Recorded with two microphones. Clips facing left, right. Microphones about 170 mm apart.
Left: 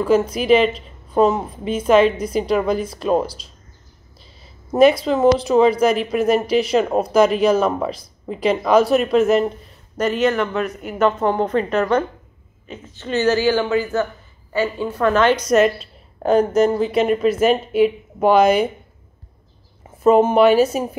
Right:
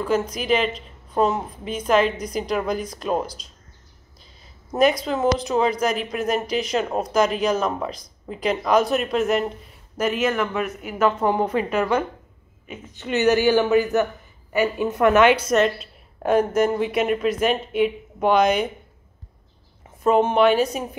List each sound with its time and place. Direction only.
0.0 s speech: 5° left (ahead or behind)
4.6 s a man's voice: 5° left (ahead or behind)
15.5 s a woman's voice: centre (ahead or behind)
20.0 s speech: 5° left (ahead or behind)